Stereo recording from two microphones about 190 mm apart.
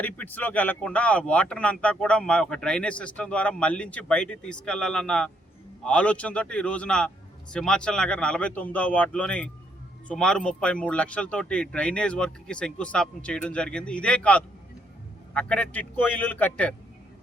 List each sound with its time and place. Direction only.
0.0 s a man's voice: 10° left (ahead or behind)